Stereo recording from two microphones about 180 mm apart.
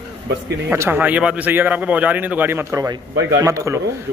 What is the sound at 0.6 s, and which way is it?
A man's voice, 10° right (ahead or behind).